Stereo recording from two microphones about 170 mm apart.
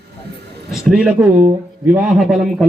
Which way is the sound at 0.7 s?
Centre (ahead or behind).